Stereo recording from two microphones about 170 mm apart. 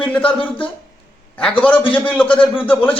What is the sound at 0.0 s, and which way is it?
Speech, 5° left (ahead or behind).